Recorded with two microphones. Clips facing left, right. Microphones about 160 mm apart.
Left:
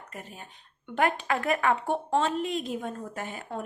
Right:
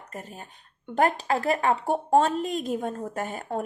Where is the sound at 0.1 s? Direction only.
40° right (ahead or behind).